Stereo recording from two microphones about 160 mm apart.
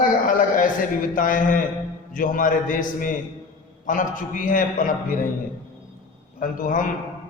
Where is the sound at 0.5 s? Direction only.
55° left (ahead or behind).